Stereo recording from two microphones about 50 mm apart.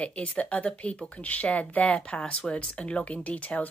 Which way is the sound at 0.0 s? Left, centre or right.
Left.